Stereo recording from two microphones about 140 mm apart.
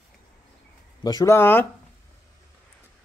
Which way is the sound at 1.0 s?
25° left (ahead or behind).